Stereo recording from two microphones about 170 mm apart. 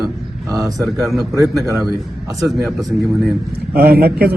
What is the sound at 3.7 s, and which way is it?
Speech, 65° right (ahead or behind).